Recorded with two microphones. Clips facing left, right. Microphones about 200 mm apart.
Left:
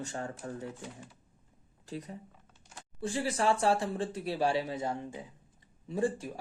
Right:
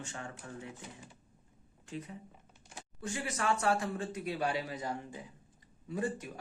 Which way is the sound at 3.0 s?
30° left (ahead or behind).